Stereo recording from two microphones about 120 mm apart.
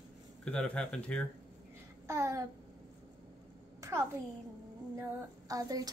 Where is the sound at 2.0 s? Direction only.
25° right (ahead or behind).